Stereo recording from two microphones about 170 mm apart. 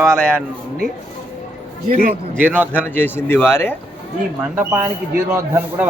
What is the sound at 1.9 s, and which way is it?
Speech, 50° right (ahead or behind).